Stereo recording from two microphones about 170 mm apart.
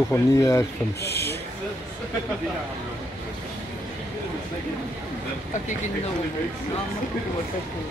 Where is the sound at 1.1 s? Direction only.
15° left (ahead or behind).